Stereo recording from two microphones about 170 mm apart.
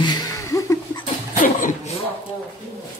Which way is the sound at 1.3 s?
50° left (ahead or behind).